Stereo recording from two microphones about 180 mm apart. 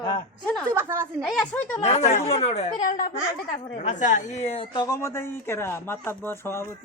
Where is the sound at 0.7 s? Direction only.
15° right (ahead or behind).